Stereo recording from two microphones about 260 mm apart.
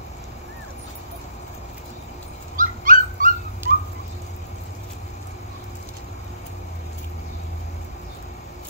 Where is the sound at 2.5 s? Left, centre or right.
Right.